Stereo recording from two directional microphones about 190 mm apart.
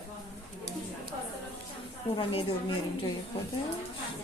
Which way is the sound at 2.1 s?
25° left (ahead or behind).